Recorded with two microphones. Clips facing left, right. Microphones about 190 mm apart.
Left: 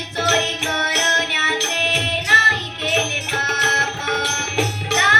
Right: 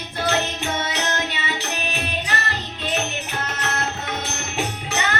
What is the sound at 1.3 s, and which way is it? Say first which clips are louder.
Music: left 3 dB; 80° left.